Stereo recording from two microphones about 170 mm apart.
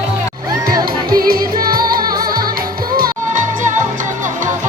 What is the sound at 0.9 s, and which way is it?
Music, 60° right (ahead or behind).